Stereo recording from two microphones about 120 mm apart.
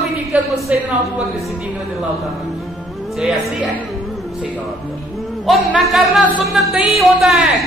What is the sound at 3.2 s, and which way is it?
Speech, centre (ahead or behind).